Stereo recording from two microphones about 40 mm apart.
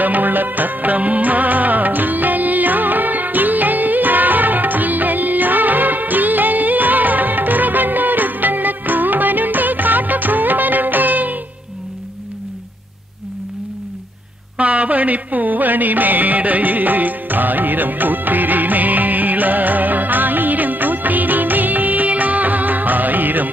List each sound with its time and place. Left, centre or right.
0.0 s music of bollywood: right
14.6 s music: right